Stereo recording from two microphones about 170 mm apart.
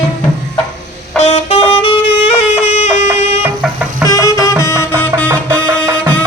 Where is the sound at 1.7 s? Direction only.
30° left (ahead or behind).